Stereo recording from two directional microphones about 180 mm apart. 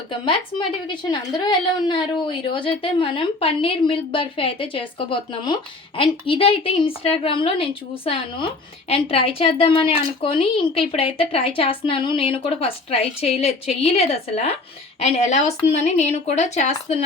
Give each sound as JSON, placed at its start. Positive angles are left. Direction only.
{"t": 0.1, "sound": "a woman's voice", "side_deg": 30}